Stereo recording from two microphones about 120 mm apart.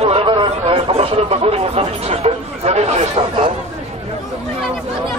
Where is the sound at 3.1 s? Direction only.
45° right (ahead or behind).